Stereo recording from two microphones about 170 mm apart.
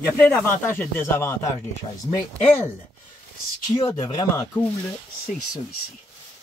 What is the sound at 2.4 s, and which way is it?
Speech, 15° left (ahead or behind).